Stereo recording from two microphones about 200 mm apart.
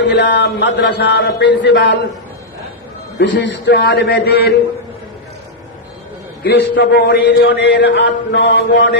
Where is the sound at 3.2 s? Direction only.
65° left (ahead or behind).